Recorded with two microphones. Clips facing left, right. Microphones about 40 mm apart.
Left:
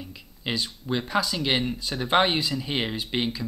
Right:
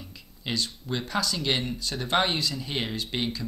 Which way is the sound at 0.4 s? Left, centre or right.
Centre.